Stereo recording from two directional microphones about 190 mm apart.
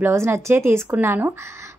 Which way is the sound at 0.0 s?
15° right (ahead or behind).